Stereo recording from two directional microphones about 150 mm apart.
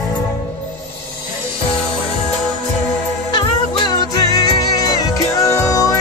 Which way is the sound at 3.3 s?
30° left (ahead or behind).